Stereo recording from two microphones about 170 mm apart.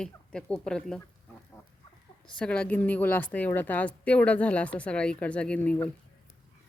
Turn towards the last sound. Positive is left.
turn(degrees=10)  # may be behind; listen again after turning